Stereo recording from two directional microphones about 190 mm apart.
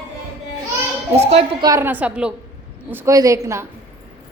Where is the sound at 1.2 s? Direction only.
30° right (ahead or behind).